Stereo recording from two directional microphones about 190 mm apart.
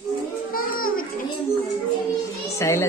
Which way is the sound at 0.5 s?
50° left (ahead or behind).